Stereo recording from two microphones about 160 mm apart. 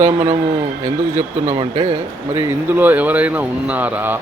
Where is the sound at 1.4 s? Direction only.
35° right (ahead or behind).